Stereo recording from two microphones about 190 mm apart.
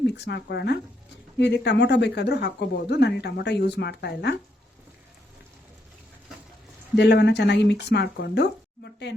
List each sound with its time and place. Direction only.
0.3 s speech: 65° left (ahead or behind)
6.9 s speech: 60° left (ahead or behind)